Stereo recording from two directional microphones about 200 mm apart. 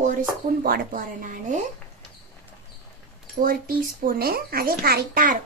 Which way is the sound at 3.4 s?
45° right (ahead or behind).